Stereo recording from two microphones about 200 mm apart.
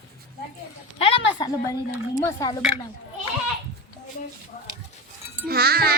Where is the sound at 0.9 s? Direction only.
25° left (ahead or behind).